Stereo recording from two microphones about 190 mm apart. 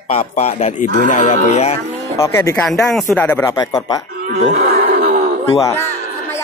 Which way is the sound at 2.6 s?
Centre (ahead or behind).